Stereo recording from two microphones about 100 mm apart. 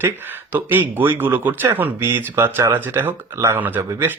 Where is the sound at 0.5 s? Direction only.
20° right (ahead or behind).